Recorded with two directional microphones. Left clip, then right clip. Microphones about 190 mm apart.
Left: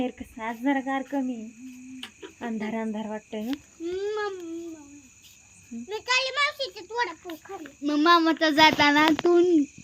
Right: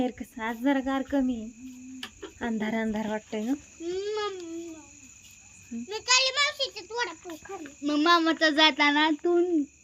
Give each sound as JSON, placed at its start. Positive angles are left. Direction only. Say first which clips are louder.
{"t": 0.0, "sound": "speech", "louder": "even", "side_deg": -5}
{"t": 2.4, "sound": "speech", "louder": "right 1 dB", "side_deg": -10}
{"t": 3.9, "sound": "babbling", "louder": "left 2 dB", "side_deg": 40}
{"t": 6.1, "sound": "a child's voice", "louder": "right 1 dB", "side_deg": 30}
{"t": 7.3, "sound": "speech", "louder": "left 1 dB", "side_deg": 0}
{"t": 7.9, "sound": "speech", "louder": "left 2 dB", "side_deg": 45}